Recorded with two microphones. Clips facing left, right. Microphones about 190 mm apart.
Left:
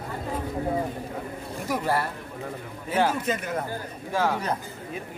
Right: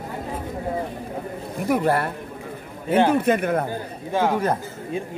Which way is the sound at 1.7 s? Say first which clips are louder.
Right 6 dB; 60° right (ahead or behind).